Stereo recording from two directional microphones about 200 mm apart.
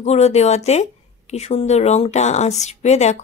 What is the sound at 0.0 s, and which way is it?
Speech, 35° left (ahead or behind).